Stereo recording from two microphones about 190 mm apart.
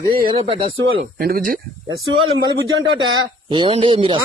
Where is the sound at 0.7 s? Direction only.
65° right (ahead or behind); by 1.6 s 50° right (ahead or behind).